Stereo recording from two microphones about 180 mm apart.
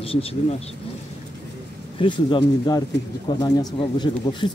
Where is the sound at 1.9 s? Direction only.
25° left (ahead or behind).